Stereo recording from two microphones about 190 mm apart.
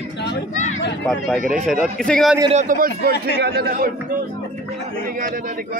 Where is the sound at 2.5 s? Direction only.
40° right (ahead or behind).